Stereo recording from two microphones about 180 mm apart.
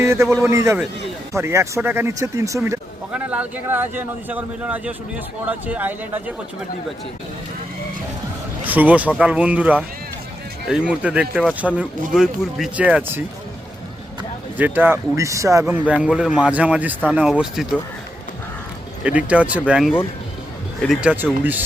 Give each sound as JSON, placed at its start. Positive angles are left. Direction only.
{"t": 0.0, "sound": "speech", "side_deg": -15}
{"t": 8.6, "sound": "speech", "side_deg": -10}
{"t": 14.6, "sound": "speech", "side_deg": -10}
{"t": 19.0, "sound": "speech", "side_deg": -5}